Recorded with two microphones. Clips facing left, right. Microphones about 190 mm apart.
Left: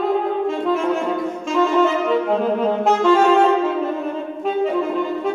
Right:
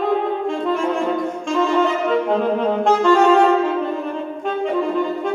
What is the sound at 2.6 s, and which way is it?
Saxophone, 5° left (ahead or behind).